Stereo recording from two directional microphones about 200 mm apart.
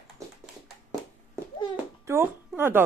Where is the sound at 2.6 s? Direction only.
10° right (ahead or behind).